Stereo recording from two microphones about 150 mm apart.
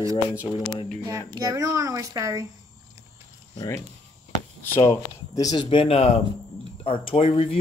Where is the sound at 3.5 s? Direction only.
20° left (ahead or behind).